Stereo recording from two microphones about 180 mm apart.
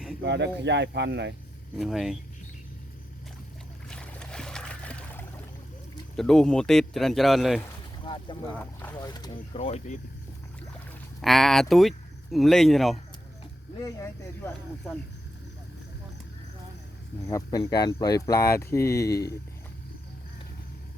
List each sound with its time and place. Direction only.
0.2 s speech: 70° right (ahead or behind)
1.7 s speech: centre (ahead or behind)
3.8 s boat: 5° left (ahead or behind)
6.1 s speech: 5° left (ahead or behind)
8.0 s boat: 25° left (ahead or behind)
9.0 s speech: 20° left (ahead or behind)
9.5 s speech: 35° left (ahead or behind)
11.2 s speech: centre (ahead or behind)
13.8 s speech: 15° left (ahead or behind)
17.2 s speech: 20° left (ahead or behind)